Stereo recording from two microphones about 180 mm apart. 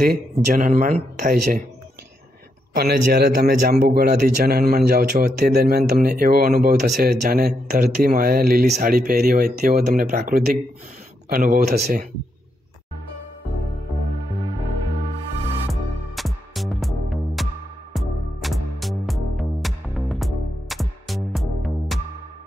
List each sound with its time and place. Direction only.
0.0 s speech: 55° right (ahead or behind)
2.7 s speech: 60° right (ahead or behind)
15.7 s music: centre (ahead or behind)